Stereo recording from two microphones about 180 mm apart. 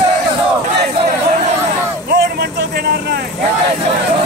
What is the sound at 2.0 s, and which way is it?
Speech, 60° right (ahead or behind).